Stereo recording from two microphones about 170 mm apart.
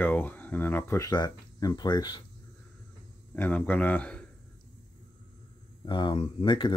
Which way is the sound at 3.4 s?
10° left (ahead or behind).